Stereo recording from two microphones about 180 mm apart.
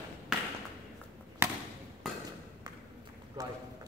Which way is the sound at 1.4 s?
15° right (ahead or behind).